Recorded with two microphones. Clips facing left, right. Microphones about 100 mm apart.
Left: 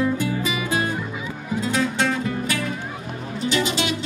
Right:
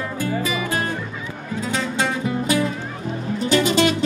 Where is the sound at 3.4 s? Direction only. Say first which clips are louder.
Right 5 dB; 45° right (ahead or behind).